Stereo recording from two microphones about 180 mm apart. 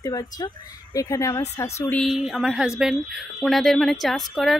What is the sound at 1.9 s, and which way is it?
Speech, centre (ahead or behind).